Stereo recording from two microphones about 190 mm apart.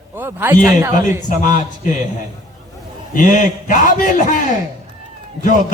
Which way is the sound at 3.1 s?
40° left (ahead or behind).